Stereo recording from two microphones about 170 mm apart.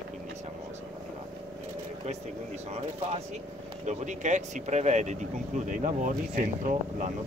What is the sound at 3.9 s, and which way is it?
Speech, 45° right (ahead or behind).